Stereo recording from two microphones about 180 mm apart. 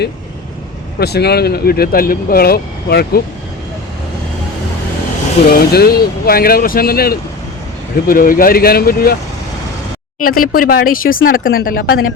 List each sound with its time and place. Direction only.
0.9 s speech: 65° left (ahead or behind)
5.5 s speech: 60° left (ahead or behind)
10.2 s speech: 55° left (ahead or behind)